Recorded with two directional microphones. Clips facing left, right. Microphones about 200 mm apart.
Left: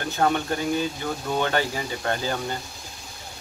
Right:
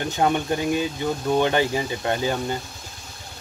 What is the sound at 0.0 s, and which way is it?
Speech, 15° right (ahead or behind).